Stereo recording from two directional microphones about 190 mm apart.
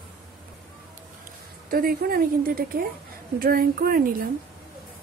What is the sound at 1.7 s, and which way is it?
A woman's voice, 50° right (ahead or behind).